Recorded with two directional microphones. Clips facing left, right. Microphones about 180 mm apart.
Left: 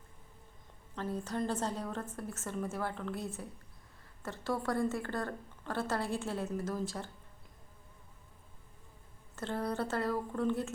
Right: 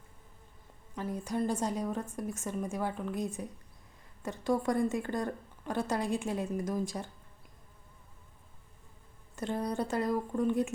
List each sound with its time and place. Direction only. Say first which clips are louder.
0.9 s a woman's voice: right 2 dB; 10° right (ahead or behind)
9.3 s a woman's voice: right 2 dB; 15° right (ahead or behind)